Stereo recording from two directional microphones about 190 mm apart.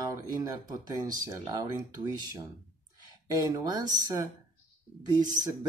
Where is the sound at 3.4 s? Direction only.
20° right (ahead or behind).